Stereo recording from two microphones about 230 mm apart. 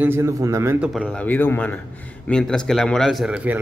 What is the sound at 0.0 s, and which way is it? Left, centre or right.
Speech, centre.